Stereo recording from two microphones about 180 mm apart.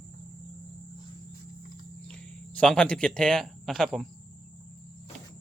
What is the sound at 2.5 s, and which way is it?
A man's voice, 5° left (ahead or behind).